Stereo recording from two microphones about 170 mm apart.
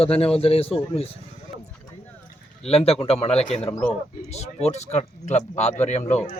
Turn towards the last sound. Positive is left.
turn(degrees=40)  # may be behind; listen again after turning